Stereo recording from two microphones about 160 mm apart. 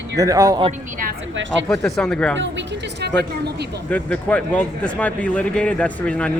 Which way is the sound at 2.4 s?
90° right.